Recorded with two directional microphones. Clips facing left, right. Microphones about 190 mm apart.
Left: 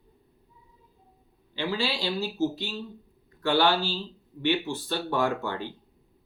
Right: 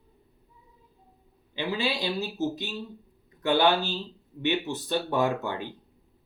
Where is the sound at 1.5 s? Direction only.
20° right (ahead or behind).